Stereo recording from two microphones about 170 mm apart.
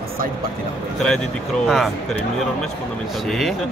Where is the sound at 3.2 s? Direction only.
Centre (ahead or behind).